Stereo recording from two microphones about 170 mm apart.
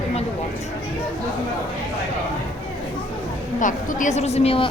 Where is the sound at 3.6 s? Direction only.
50° left (ahead or behind); by 4.7 s 35° left (ahead or behind).